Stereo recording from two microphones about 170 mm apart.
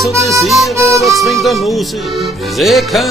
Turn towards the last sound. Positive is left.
turn(degrees=0)  # may be behind; listen again after turning